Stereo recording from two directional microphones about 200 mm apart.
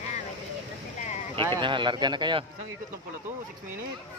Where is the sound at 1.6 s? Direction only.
25° right (ahead or behind).